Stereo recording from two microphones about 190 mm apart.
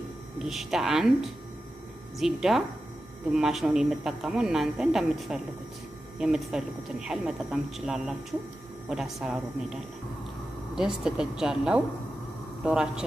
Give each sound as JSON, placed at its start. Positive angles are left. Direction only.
{"t": 0.4, "sound": "speech", "side_deg": 0}
{"t": 2.1, "sound": "speech", "side_deg": 0}
{"t": 10.8, "sound": "speech", "side_deg": -5}